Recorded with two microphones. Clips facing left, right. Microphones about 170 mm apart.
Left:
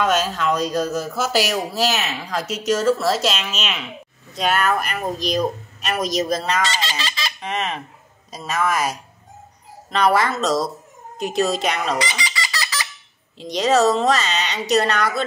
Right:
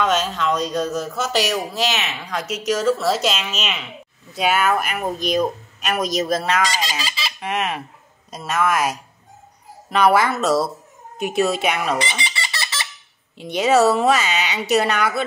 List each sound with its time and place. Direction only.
0.0 s speech: 5° left (ahead or behind)
6.6 s fowl: 10° right (ahead or behind)
8.3 s a woman's voice: centre (ahead or behind)
12.0 s a sound: 25° right (ahead or behind)
13.4 s a woman's voice: 5° right (ahead or behind)